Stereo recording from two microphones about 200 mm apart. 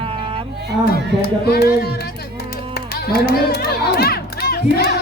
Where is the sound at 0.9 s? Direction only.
50° left (ahead or behind).